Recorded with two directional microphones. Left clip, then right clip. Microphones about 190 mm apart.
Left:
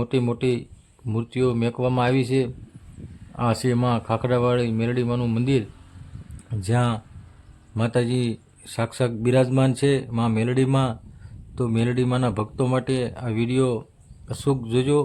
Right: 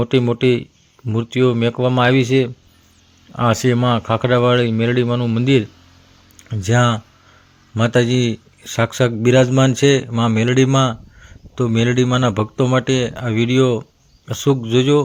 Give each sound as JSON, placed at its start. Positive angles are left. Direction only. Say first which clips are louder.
{"t": 0.0, "sound": "speech", "louder": "right 8 dB", "side_deg": -15}